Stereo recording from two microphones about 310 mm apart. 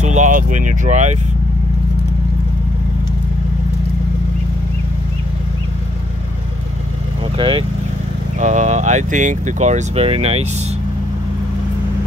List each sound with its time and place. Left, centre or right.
0.0 s speech: right
7.3 s speech: centre